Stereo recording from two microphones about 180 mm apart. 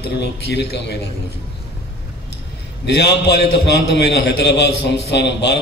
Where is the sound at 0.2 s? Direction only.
65° left (ahead or behind).